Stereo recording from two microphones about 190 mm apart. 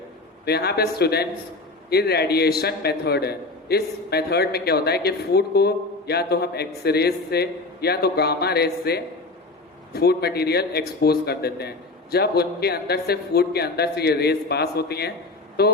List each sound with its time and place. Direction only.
0.4 s a man's voice: 60° left (ahead or behind)